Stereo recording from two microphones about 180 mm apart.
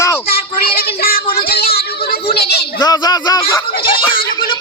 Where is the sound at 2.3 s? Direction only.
60° left (ahead or behind).